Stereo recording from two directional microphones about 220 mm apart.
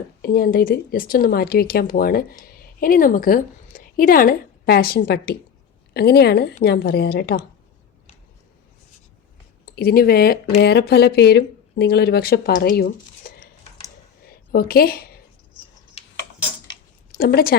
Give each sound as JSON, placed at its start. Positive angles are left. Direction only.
{"t": 0.2, "sound": "a woman's voice", "side_deg": 40}
{"t": 9.6, "sound": "speech", "side_deg": 45}
{"t": 14.5, "sound": "a woman's voice", "side_deg": 40}
{"t": 17.1, "sound": "a woman's voice", "side_deg": 45}